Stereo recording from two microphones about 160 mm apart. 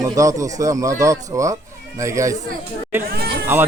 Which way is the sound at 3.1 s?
75° right (ahead or behind).